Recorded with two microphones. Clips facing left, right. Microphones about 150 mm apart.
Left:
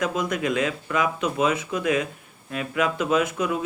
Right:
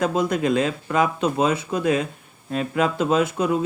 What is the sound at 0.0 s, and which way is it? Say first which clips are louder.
Speech: right 4 dB; 30° right (ahead or behind).